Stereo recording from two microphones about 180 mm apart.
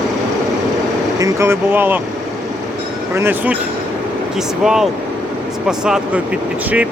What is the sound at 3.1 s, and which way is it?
Speech, 10° right (ahead or behind).